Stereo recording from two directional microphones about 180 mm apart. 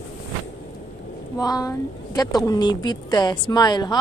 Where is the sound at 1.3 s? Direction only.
20° left (ahead or behind).